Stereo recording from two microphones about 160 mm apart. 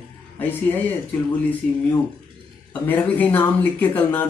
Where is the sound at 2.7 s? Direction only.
10° left (ahead or behind).